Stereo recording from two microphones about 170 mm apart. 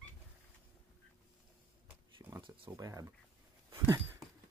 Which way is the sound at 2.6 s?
20° right (ahead or behind).